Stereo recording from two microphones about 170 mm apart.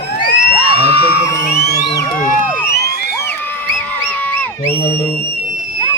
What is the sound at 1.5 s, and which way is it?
Music, 70° left (ahead or behind).